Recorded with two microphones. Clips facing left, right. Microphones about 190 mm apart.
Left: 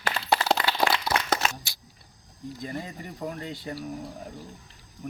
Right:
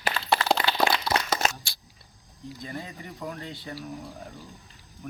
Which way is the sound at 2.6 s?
40° left (ahead or behind).